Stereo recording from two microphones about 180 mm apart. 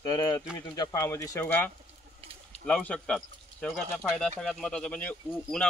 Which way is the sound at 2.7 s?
5° left (ahead or behind).